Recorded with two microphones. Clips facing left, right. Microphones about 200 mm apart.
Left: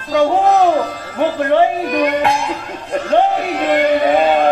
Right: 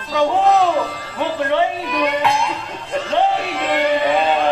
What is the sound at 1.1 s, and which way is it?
Speech, 50° left (ahead or behind).